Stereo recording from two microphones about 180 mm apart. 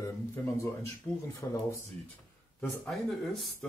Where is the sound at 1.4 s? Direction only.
15° left (ahead or behind).